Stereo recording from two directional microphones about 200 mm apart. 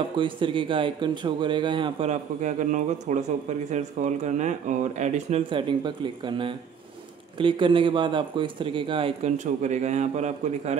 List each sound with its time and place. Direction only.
0.2 s speech: 25° right (ahead or behind)